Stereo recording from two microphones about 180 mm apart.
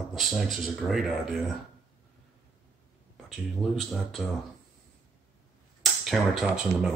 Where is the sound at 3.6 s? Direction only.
Centre (ahead or behind).